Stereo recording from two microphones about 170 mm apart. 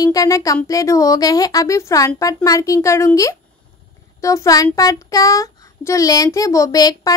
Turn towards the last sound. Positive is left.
turn(degrees=20)  # may be behind; listen again after turning